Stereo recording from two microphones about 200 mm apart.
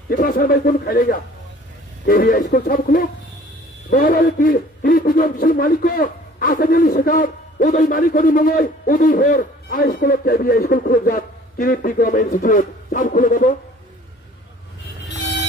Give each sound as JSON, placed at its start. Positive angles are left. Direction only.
{"t": 0.1, "sound": "a man's voice", "side_deg": 45}